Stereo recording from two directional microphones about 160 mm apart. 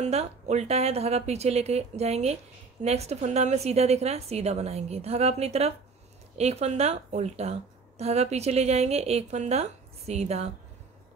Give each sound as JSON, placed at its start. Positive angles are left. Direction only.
{"t": 0.0, "sound": "a woman's voice", "side_deg": -45}